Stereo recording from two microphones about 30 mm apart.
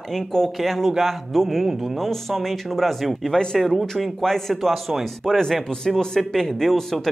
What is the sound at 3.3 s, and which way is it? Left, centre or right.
Speech, centre.